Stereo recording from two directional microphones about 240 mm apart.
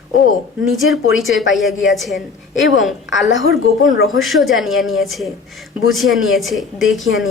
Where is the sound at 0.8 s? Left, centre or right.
Left.